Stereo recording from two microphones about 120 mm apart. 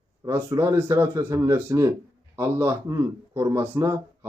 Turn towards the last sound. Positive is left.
turn(degrees=-25)  # may be behind; listen again after turning